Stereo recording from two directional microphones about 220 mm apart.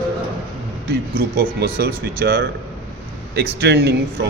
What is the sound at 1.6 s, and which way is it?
A man's voice, 45° right (ahead or behind).